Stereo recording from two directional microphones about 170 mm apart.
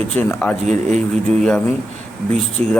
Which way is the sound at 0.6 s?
40° right (ahead or behind).